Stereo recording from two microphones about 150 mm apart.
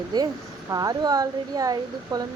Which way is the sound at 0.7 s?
25° right (ahead or behind).